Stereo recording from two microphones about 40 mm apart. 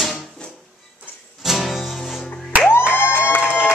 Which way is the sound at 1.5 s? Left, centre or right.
Centre.